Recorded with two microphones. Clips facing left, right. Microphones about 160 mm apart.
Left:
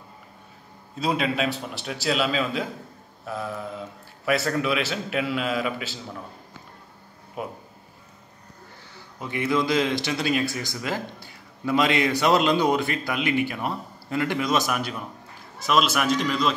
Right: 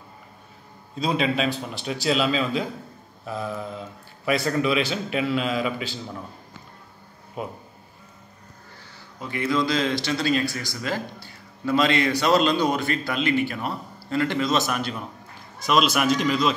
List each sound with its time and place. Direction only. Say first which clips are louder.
0.9 s a man's voice: right 1 dB; 5° left (ahead or behind)
7.4 s a man's voice: right 1 dB; 5° left (ahead or behind)
9.2 s a man's voice: even; 20° left (ahead or behind); by 16.5 s centre (ahead or behind)